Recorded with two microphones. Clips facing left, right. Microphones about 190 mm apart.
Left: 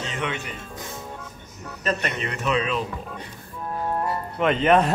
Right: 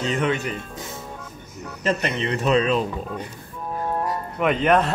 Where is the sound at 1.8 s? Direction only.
30° right (ahead or behind).